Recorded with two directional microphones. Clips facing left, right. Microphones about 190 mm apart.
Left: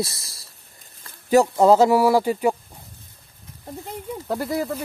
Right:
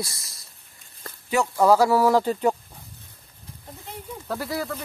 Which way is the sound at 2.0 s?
10° left (ahead or behind).